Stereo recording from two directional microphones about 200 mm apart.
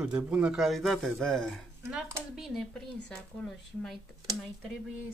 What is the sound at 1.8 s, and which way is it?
Speech, 15° right (ahead or behind).